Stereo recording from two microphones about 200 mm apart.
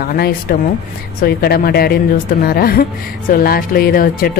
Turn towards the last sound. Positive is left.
turn(degrees=45)  # may be behind; listen again after turning